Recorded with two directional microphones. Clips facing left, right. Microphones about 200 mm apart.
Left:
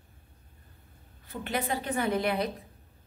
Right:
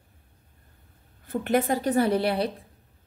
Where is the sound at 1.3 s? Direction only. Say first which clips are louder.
Right 8 dB; 45° right (ahead or behind).